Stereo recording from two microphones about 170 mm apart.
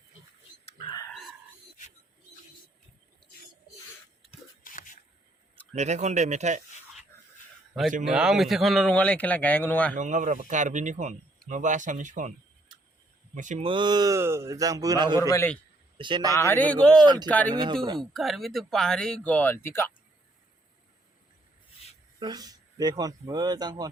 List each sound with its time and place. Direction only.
4.6 s a sound: 50° left (ahead or behind)
5.7 s speech: 40° right (ahead or behind)
8.0 s speech: 5° right (ahead or behind)
9.9 s speech: 50° right (ahead or behind)
13.3 s speech: 45° right (ahead or behind)
13.7 s speech: 25° right (ahead or behind)
15.2 s a man's voice: 20° left (ahead or behind)
16.0 s speech: 30° right (ahead or behind)
16.3 s speech: 15° left (ahead or behind)
17.5 s speech: 30° right (ahead or behind)
18.0 s speech: centre (ahead or behind)
22.2 s speech: 25° right (ahead or behind)